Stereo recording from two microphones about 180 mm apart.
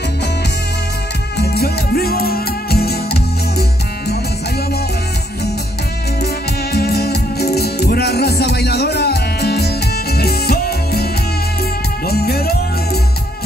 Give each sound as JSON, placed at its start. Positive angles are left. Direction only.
{"t": 1.4, "sound": "music", "side_deg": 60}
{"t": 6.7, "sound": "music", "side_deg": 60}
{"t": 12.1, "sound": "music", "side_deg": 60}